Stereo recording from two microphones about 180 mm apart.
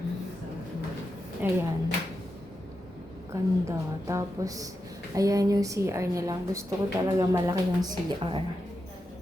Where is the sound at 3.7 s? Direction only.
15° right (ahead or behind).